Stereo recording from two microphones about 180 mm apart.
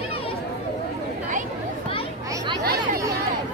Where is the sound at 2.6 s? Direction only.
55° right (ahead or behind).